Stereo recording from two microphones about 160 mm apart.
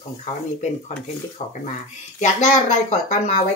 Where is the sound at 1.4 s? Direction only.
30° left (ahead or behind).